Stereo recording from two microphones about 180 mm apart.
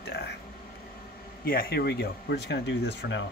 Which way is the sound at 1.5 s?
60° left (ahead or behind).